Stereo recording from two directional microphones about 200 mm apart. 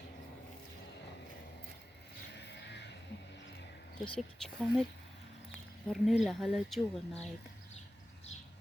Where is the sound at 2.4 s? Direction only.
60° left (ahead or behind).